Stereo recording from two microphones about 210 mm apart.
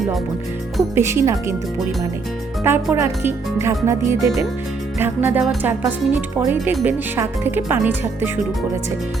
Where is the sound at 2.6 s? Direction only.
10° right (ahead or behind).